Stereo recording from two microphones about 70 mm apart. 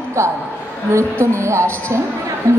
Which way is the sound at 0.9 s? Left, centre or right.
Right.